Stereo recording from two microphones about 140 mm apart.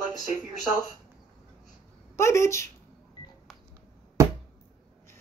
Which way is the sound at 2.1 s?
20° left (ahead or behind).